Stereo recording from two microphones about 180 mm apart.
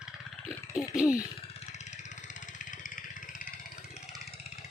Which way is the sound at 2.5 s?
45° left (ahead or behind).